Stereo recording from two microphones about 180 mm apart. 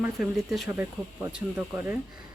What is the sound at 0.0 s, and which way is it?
Speech, centre (ahead or behind).